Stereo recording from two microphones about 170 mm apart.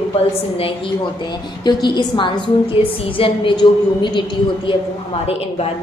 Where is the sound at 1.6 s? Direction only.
25° left (ahead or behind).